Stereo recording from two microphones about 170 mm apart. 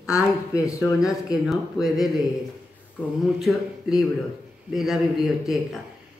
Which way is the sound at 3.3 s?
Centre (ahead or behind).